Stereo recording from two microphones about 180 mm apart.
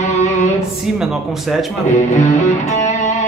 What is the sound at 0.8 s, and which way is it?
Speech, centre (ahead or behind).